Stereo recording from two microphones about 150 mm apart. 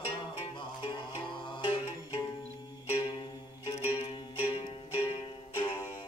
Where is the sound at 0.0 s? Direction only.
35° left (ahead or behind).